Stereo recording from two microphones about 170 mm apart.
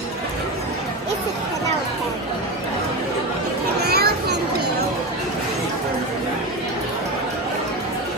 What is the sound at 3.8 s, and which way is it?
Children playing, 70° right (ahead or behind).